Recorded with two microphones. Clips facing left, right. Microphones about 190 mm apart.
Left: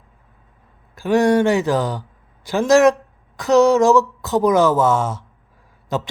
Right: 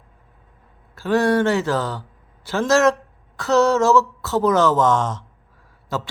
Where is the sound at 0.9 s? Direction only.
15° left (ahead or behind).